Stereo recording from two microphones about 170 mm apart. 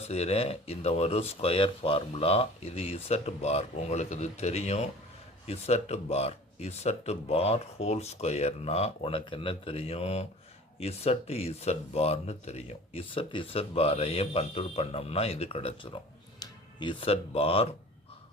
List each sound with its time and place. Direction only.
0.1 s speech: 35° left (ahead or behind)